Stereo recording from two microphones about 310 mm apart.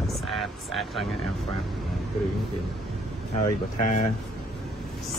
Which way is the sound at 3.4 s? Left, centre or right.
Left.